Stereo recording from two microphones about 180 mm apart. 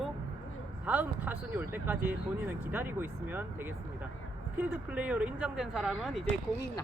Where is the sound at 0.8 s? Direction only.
10° right (ahead or behind).